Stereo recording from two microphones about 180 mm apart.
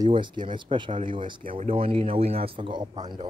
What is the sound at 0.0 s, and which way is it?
A man's voice, 25° right (ahead or behind).